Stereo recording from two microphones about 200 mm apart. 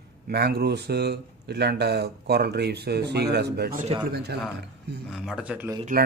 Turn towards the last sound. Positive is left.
turn(degrees=-10)  # may be behind; listen again after turning